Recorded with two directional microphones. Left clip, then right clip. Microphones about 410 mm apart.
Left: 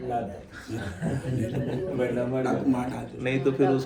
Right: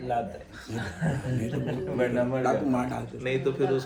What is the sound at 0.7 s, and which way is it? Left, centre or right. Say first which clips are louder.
Speech: even; centre.